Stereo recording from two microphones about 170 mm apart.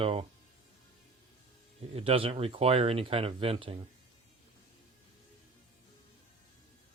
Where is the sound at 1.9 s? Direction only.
35° right (ahead or behind).